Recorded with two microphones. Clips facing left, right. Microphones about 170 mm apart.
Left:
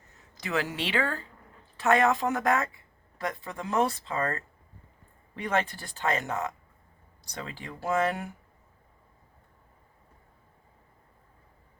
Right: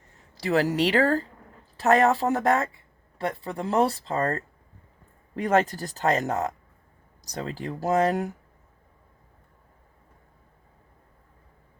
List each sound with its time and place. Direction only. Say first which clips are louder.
0.3 s speech: right 8 dB; 35° right (ahead or behind)